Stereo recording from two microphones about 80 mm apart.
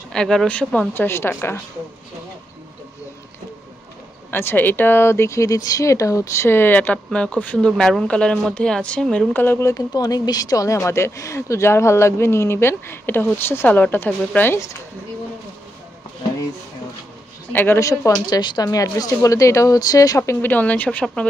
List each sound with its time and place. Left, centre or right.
0.1 s speech: centre
0.9 s a woman's voice: left
4.3 s a woman's voice: left
6.5 s speech: left; by 9.3 s centre
9.3 s a woman's voice: left
9.7 s a woman's voice: left
17.5 s speech: left
17.7 s a woman's voice: left
18.3 s speech: left
18.7 s speech: left
20.2 s a woman's voice: left
20.5 s a woman's voice: centre